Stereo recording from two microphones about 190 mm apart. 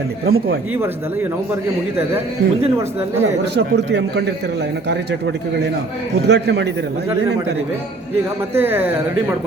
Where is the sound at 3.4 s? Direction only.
65° right (ahead or behind).